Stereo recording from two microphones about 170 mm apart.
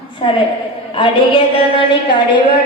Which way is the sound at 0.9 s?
30° left (ahead or behind).